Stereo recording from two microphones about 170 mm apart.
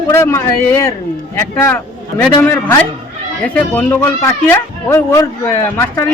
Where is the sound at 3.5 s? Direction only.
10° left (ahead or behind).